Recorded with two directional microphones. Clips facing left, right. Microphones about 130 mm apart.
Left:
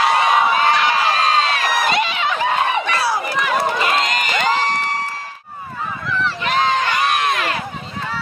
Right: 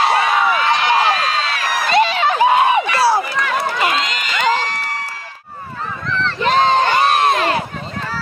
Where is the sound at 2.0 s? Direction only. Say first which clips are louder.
Right 5 dB; 35° right (ahead or behind).